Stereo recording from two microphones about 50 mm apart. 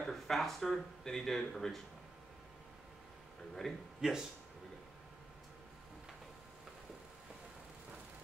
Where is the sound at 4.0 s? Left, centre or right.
Centre.